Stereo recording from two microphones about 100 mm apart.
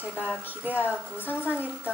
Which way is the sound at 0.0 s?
20° left (ahead or behind).